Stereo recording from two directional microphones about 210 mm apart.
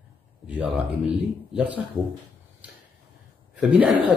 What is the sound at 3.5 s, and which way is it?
Hoot, 5° right (ahead or behind).